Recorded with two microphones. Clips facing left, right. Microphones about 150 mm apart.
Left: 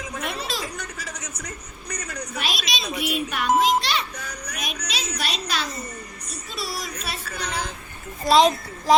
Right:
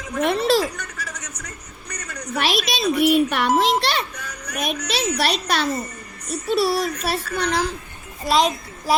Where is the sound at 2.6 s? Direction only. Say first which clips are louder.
Right 6 dB; 55° right (ahead or behind).